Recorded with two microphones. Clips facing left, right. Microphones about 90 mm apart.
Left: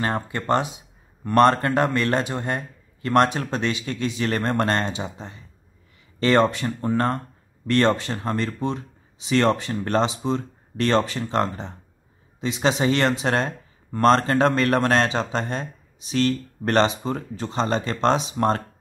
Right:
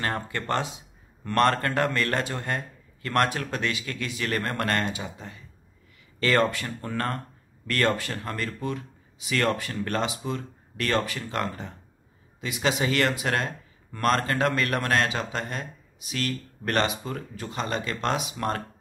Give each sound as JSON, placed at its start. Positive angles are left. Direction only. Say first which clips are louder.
{"t": 0.0, "sound": "speech", "louder": "left 4 dB", "side_deg": 20}